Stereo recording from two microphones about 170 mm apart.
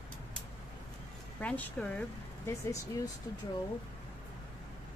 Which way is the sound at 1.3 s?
10° left (ahead or behind).